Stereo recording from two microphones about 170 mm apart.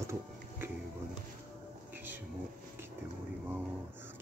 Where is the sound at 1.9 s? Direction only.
10° right (ahead or behind).